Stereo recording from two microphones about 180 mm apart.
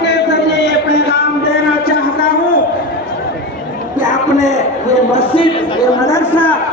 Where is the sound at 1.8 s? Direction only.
55° left (ahead or behind).